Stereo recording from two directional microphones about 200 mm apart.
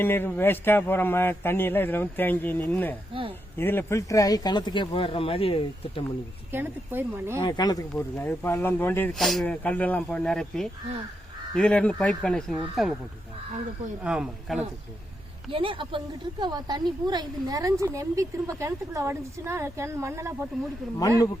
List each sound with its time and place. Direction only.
0.0 s speech: 10° left (ahead or behind)
3.1 s a woman's voice: 25° right (ahead or behind)
3.6 s speech: 10° left (ahead or behind); by 6.0 s 30° left (ahead or behind)
6.5 s a woman's voice: 10° right (ahead or behind)
7.3 s speech: 20° left (ahead or behind); by 12.9 s centre (ahead or behind)
14.0 s speech: 5° right (ahead or behind)
15.4 s a woman's voice: 25° right (ahead or behind)